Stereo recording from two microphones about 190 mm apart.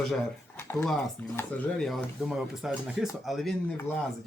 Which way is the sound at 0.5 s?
10° left (ahead or behind).